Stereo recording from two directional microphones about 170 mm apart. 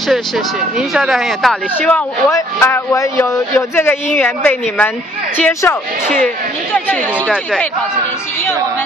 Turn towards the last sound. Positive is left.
turn(degrees=5)  # may be behind; listen again after turning